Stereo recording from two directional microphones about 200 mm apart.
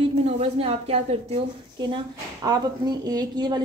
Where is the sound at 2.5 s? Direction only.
20° right (ahead or behind).